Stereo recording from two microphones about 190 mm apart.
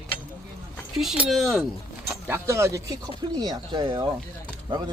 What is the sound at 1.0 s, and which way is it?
Speech, centre (ahead or behind).